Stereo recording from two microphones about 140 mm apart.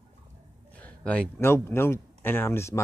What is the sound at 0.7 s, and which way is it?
Speech, 10° left (ahead or behind).